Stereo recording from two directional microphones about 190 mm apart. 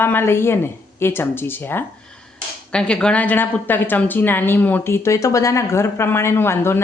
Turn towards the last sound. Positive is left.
turn(degrees=10)  # may be behind; listen again after turning